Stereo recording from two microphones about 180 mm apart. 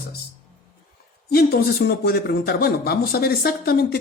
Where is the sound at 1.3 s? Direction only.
55° left (ahead or behind).